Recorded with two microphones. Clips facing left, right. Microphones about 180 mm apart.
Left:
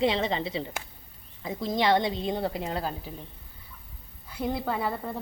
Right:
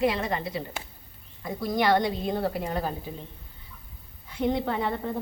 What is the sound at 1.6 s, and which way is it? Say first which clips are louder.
Speech: right 1 dB; 20° left (ahead or behind).